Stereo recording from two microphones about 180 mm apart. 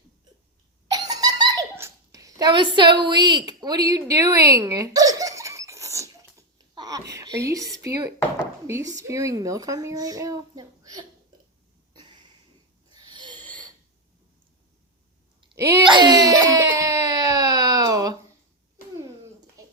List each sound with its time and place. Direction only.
0.9 s giggle: 20° right (ahead or behind)
4.1 s baby laughter: 20° right (ahead or behind)
7.1 s a sound: 20° right (ahead or behind)
8.6 s a child's voice: 15° right (ahead or behind)
12.9 s a sound: 25° right (ahead or behind)
15.4 s wail: 25° right (ahead or behind)